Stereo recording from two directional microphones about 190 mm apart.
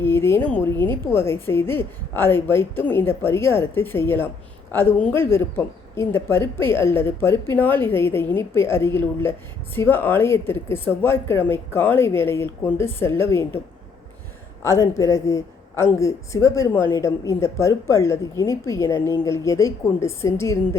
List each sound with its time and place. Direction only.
0.0 s speech: 10° left (ahead or behind)
14.6 s speech: 15° left (ahead or behind)